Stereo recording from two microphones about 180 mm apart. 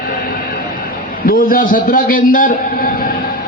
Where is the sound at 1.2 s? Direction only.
55° left (ahead or behind).